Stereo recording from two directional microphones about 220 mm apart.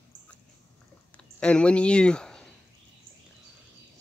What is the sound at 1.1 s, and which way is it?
Speech, 5° left (ahead or behind).